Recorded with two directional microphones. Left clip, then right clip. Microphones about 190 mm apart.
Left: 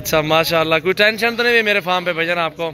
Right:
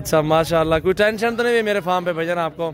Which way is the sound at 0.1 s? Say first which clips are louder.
Left 1 dB; 15° right (ahead or behind).